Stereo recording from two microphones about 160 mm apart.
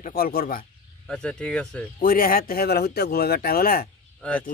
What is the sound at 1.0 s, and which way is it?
Speech, 5° left (ahead or behind).